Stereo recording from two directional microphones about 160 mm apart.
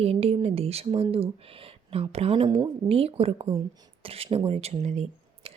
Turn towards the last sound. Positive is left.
turn(degrees=-40)  # may be behind; listen again after turning